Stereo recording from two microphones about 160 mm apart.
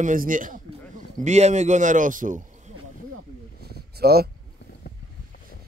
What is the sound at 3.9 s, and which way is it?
Speech, 75° right (ahead or behind).